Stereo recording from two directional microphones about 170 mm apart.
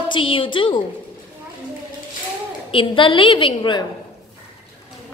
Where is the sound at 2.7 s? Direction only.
30° left (ahead or behind).